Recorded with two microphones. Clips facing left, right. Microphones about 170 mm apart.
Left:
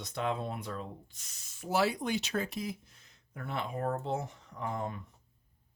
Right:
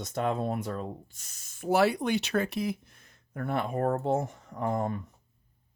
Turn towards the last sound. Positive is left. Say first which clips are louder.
# right 7 dB
turn(degrees=-45)  # may be behind; listen again after turning